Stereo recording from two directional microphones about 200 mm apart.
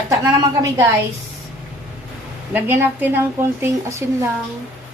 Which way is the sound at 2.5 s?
10° right (ahead or behind).